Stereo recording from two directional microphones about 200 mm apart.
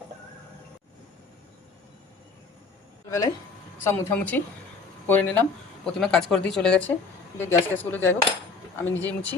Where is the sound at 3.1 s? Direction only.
15° left (ahead or behind).